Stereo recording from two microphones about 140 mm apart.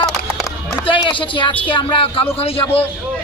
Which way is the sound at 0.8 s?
35° left (ahead or behind).